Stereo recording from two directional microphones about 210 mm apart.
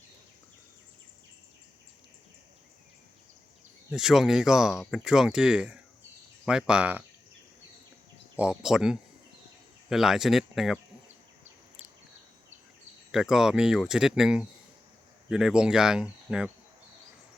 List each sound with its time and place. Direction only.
3.9 s speech: centre (ahead or behind)
8.4 s speech: 5° right (ahead or behind)
13.1 s speech: centre (ahead or behind)